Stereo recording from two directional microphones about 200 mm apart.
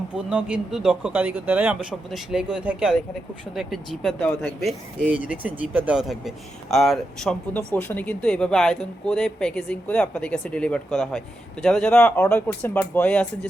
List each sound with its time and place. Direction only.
0.2 s speech: 5° right (ahead or behind)